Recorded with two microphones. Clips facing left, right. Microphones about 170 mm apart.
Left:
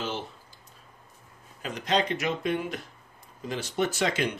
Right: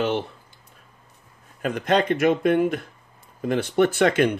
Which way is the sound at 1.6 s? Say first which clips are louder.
Right 6 dB; 55° right (ahead or behind).